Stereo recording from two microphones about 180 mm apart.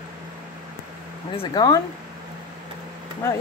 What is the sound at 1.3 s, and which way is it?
Speech, 20° left (ahead or behind).